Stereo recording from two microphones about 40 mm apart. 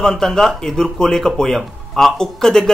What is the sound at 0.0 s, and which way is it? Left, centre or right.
Speech, centre.